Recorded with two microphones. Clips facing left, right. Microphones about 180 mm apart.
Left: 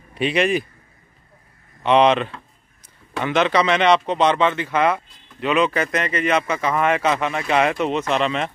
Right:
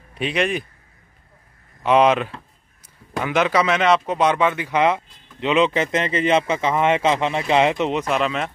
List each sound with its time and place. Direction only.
0.1 s speech: centre (ahead or behind)
1.8 s speech: 5° right (ahead or behind)